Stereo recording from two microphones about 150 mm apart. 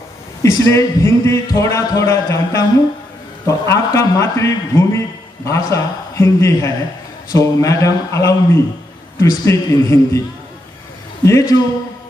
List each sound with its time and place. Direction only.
0.4 s a man's voice: 20° left (ahead or behind)
11.2 s a man's voice: 20° left (ahead or behind)